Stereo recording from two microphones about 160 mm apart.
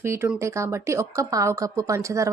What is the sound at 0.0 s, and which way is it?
Speech, 15° right (ahead or behind).